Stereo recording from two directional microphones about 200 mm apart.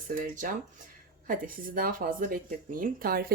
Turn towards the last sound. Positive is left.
turn(degrees=-50)  # may be behind; listen again after turning